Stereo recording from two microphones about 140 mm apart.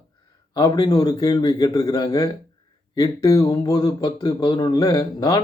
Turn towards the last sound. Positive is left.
turn(degrees=25)  # may be behind; listen again after turning